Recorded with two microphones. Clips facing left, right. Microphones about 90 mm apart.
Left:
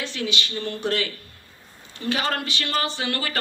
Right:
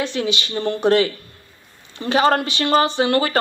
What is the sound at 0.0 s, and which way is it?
A woman's voice, 20° right (ahead or behind).